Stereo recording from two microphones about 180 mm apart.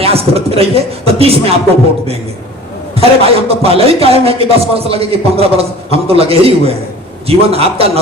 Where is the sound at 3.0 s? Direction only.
35° right (ahead or behind).